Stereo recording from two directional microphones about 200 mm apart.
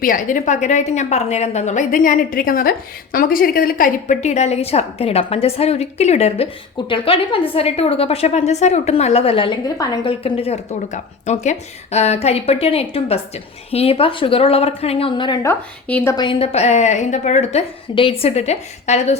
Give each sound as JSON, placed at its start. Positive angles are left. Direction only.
{"t": 0.0, "sound": "a woman's voice", "side_deg": 40}
{"t": 15.9, "sound": "a woman's voice", "side_deg": 10}
{"t": 16.1, "sound": "a woman's voice", "side_deg": 25}